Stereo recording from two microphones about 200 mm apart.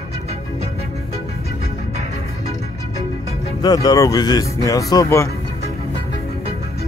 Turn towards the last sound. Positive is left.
turn(degrees=15)  # may be behind; listen again after turning